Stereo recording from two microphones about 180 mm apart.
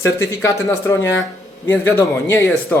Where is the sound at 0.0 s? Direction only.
15° left (ahead or behind).